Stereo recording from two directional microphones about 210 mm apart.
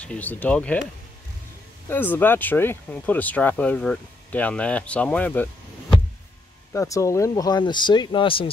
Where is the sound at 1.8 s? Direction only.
10° left (ahead or behind).